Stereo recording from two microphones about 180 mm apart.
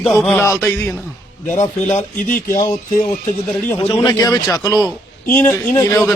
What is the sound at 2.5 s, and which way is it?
A man's voice, 20° left (ahead or behind).